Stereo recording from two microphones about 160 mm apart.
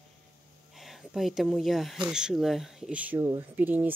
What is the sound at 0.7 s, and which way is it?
Speech, centre (ahead or behind).